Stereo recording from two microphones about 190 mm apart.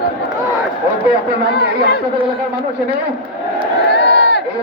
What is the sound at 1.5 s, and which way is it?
Speech, 60° left (ahead or behind).